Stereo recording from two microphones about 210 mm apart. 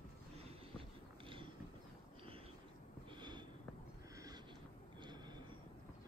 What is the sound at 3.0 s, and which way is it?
Sniff, 20° right (ahead or behind).